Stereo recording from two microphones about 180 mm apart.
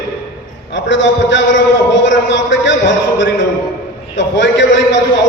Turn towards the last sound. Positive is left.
turn(degrees=90)